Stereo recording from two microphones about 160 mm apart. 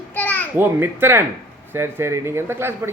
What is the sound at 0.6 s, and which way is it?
Speech, 15° right (ahead or behind).